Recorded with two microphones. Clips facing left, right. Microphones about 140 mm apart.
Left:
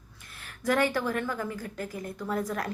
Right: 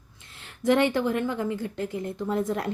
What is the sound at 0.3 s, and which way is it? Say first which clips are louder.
A woman's voice: right 4 dB; 25° right (ahead or behind).